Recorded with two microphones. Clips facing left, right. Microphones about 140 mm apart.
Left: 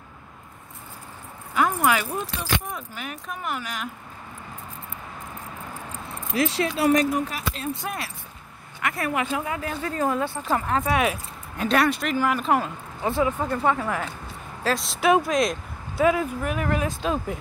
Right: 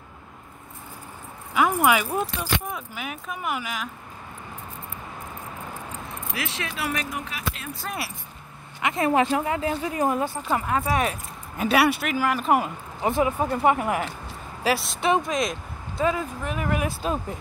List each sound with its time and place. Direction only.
1.5 s keys jangling: 5° right (ahead or behind)
2.7 s speech: 5° right (ahead or behind)
6.3 s speech: 35° left (ahead or behind)
8.8 s speech: 20° right (ahead or behind)
10.7 s speech: centre (ahead or behind)
13.0 s speech: 15° right (ahead or behind); by 16.6 s 5° left (ahead or behind)
16.6 s speech: 10° right (ahead or behind)